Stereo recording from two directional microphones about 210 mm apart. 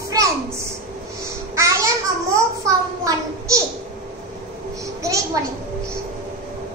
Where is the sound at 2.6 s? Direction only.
15° right (ahead or behind).